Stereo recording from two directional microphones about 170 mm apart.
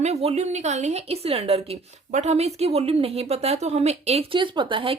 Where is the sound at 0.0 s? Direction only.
40° right (ahead or behind).